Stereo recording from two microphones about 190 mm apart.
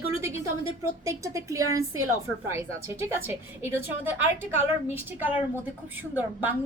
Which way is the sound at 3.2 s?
10° right (ahead or behind).